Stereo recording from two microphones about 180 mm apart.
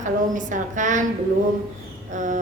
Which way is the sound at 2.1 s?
45° right (ahead or behind).